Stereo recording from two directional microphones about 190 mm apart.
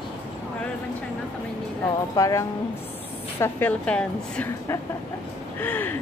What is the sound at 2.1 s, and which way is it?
A woman's voice, 15° left (ahead or behind).